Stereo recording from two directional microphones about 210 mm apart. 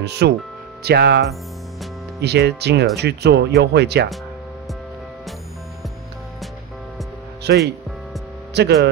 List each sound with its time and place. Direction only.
0.0 s speech: 55° right (ahead or behind)
2.2 s speech: 50° right (ahead or behind)
7.4 s speech: 50° right (ahead or behind)